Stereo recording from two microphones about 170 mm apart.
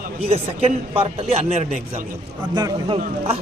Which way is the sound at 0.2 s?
35° right (ahead or behind).